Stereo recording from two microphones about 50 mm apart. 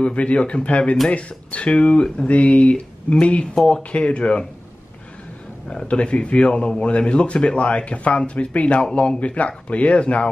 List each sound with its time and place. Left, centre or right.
0.0 s a man's voice: left
5.7 s a man's voice: left